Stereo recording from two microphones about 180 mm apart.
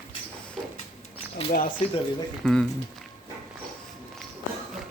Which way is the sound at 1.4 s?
35° left (ahead or behind).